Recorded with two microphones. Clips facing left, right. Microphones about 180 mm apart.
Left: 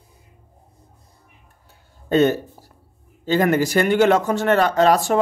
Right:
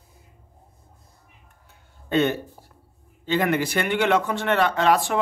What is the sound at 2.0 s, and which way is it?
Speech, 40° left (ahead or behind).